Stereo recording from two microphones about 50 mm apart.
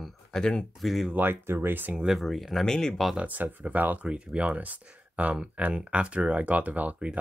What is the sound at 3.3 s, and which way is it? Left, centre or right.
Speech, right.